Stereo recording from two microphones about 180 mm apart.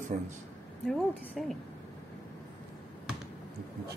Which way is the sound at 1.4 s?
Centre (ahead or behind).